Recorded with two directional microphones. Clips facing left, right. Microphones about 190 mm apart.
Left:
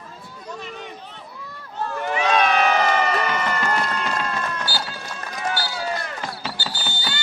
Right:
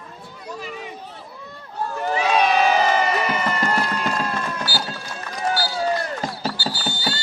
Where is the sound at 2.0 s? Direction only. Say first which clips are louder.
Right 2 dB; 35° right (ahead or behind).